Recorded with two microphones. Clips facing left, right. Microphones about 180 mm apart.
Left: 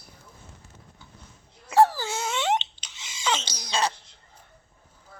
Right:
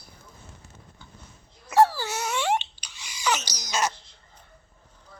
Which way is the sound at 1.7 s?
15° left (ahead or behind).